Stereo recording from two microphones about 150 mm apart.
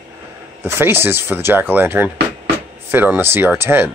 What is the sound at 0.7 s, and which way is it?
Speech, 15° right (ahead or behind).